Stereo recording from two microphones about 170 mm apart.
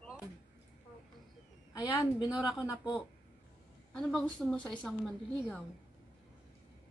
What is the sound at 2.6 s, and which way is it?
Speech, 20° left (ahead or behind).